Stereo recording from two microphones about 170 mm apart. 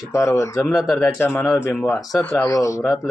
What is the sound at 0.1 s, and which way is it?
Speech, 15° left (ahead or behind).